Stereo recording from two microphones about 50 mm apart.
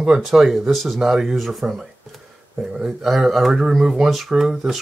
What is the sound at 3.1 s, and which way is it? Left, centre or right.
Speech, centre.